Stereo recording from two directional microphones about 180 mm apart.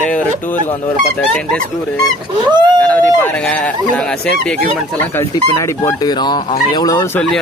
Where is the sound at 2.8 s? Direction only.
10° left (ahead or behind).